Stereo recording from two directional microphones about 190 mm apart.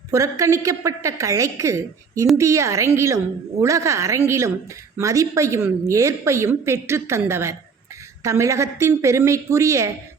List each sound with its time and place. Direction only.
0.1 s a woman's voice: 15° right (ahead or behind)